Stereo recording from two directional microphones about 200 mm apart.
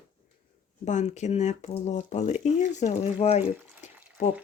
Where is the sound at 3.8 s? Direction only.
40° left (ahead or behind).